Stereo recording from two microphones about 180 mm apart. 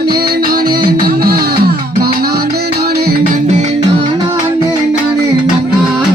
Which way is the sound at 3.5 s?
40° right (ahead or behind).